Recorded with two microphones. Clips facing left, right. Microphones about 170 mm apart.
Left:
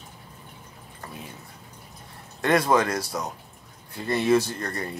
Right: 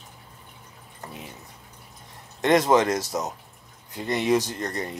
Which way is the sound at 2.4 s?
20° right (ahead or behind).